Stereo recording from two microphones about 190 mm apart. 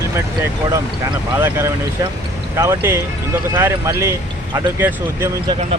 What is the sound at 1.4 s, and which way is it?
Speech, 15° right (ahead or behind).